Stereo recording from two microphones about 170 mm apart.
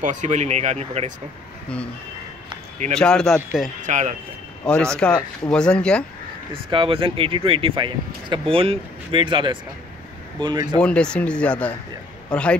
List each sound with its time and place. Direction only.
0.0 s speech: 45° right (ahead or behind)
2.9 s speech: 5° left (ahead or behind)
3.8 s speech: 45° right (ahead or behind)
4.6 s speech: 5° left (ahead or behind)
6.5 s speech: 30° right (ahead or behind)
10.8 s a man's voice: 5° left (ahead or behind)